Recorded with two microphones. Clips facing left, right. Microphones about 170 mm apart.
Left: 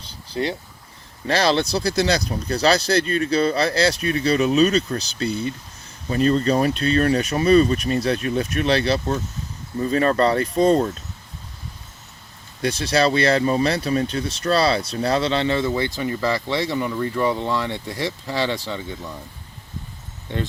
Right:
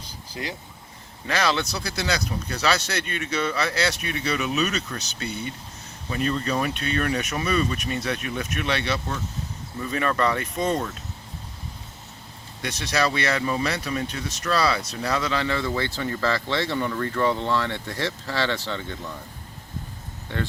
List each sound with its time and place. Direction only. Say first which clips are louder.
0.4 s speech: left 9 dB; 35° left (ahead or behind)
12.6 s speech: left 6 dB; 30° left (ahead or behind); by 18.9 s 10° left (ahead or behind)
20.2 s speech: left 3 dB; 20° left (ahead or behind)